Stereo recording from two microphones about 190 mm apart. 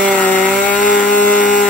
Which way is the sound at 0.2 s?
10° left (ahead or behind).